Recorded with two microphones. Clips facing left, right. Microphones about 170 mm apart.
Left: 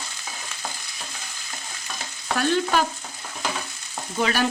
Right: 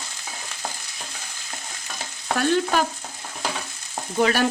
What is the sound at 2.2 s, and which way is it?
Stir, 45° right (ahead or behind).